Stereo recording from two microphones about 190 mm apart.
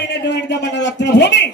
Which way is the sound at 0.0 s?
65° left (ahead or behind).